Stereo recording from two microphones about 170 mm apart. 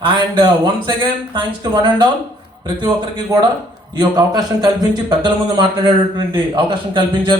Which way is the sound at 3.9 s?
25° right (ahead or behind).